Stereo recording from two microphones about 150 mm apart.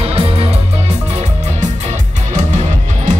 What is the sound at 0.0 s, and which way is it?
Music, 40° right (ahead or behind).